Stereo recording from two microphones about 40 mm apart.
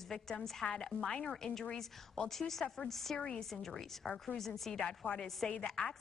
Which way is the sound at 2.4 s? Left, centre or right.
Centre.